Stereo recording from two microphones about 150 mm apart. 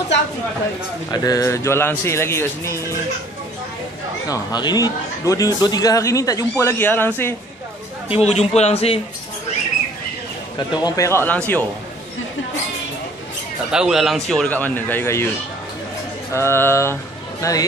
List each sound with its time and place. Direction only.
1.1 s a man's voice: 25° left (ahead or behind)
4.3 s a man's voice: 25° left (ahead or behind)
8.1 s a man's voice: 45° left (ahead or behind)
10.7 s a man's voice: 25° left (ahead or behind)
13.7 s speech: 5° right (ahead or behind); by 15.2 s 15° left (ahead or behind)
16.3 s speech: 15° left (ahead or behind)